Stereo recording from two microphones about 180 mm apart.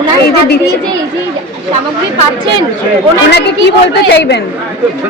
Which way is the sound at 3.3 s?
70° left (ahead or behind).